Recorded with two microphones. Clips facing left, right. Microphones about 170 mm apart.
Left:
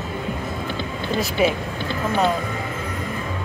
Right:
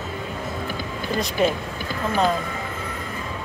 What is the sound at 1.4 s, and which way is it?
Speech, 5° left (ahead or behind).